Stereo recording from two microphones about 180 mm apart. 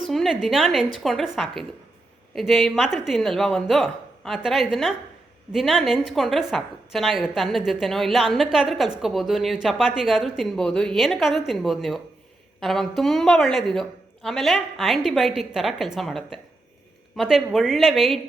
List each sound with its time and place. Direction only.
0.1 s a woman's voice: centre (ahead or behind)